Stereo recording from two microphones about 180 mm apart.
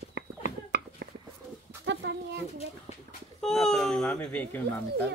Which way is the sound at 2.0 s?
75° right (ahead or behind).